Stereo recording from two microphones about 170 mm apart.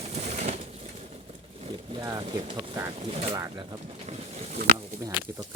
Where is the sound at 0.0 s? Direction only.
40° right (ahead or behind).